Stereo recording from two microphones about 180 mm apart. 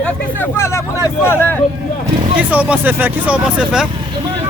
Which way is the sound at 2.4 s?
10° right (ahead or behind).